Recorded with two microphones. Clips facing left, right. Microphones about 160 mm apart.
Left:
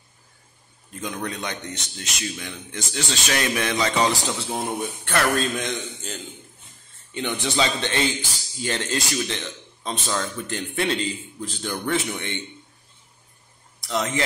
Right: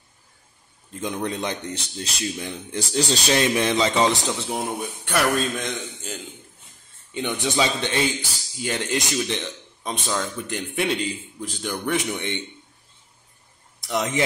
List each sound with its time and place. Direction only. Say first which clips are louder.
1.0 s a man's voice: right 3 dB; 25° right (ahead or behind); by 6.1 s 5° right (ahead or behind)
7.2 s a man's voice: right 1 dB; 15° right (ahead or behind)
13.8 s a man's voice: right 1 dB; 20° right (ahead or behind)